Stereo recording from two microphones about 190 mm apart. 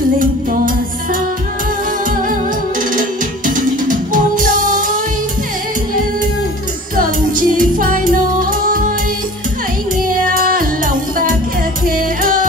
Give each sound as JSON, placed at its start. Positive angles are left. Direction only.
{"t": 0.2, "sound": "music", "side_deg": -45}
{"t": 2.9, "sound": "music", "side_deg": -45}
{"t": 7.0, "sound": "music", "side_deg": -45}
{"t": 10.3, "sound": "music", "side_deg": -45}